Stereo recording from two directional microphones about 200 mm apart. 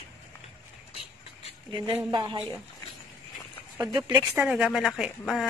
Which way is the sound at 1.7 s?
20° right (ahead or behind).